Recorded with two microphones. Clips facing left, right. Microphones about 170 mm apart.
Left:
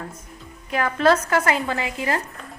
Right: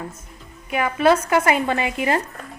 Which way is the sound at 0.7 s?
10° right (ahead or behind).